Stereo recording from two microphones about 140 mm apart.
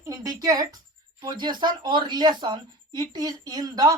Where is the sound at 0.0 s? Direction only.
25° right (ahead or behind).